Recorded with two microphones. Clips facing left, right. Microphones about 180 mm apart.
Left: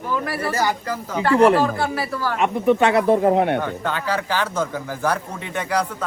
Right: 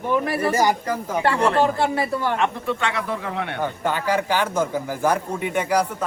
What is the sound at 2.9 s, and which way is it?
Speech, 35° left (ahead or behind).